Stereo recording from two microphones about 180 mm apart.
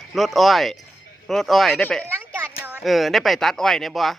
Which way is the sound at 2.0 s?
10° right (ahead or behind).